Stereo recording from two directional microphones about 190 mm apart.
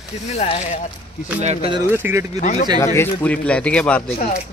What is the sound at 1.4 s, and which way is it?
Speech, 35° right (ahead or behind).